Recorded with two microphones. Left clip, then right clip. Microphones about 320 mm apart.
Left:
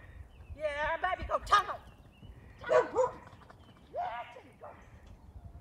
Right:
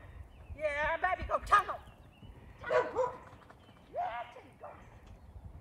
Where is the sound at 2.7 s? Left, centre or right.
Left.